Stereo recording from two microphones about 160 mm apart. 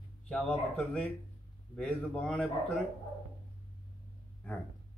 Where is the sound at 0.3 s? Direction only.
5° left (ahead or behind).